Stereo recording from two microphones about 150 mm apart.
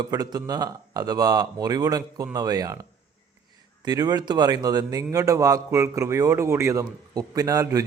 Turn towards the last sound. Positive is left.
turn(degrees=-20)  # may be behind; listen again after turning